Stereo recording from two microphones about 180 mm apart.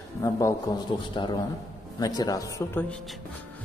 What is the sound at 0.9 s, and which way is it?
Speech, 25° left (ahead or behind).